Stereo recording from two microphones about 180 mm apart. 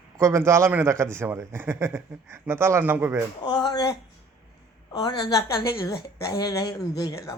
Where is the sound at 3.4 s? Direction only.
25° left (ahead or behind).